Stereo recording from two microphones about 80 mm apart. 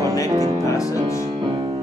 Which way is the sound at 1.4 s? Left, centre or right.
Right.